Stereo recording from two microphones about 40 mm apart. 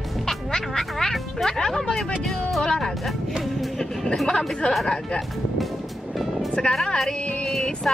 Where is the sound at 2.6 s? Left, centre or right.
Centre.